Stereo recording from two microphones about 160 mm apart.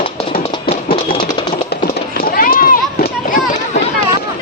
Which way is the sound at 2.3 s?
65° left (ahead or behind).